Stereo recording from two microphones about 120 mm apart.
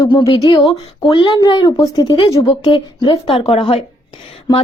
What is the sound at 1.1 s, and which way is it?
Speech, 40° left (ahead or behind).